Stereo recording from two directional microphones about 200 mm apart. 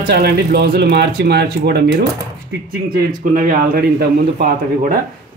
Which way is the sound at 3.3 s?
45° right (ahead or behind).